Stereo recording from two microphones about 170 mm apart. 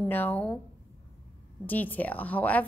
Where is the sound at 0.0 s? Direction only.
10° left (ahead or behind).